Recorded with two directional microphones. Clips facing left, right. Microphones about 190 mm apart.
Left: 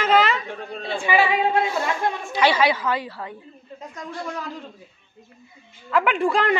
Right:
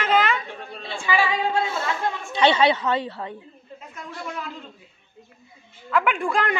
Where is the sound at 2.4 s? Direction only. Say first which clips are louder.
Right 1 dB; 25° right (ahead or behind).